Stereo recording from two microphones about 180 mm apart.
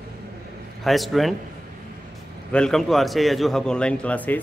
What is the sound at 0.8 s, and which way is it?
Speech, centre (ahead or behind).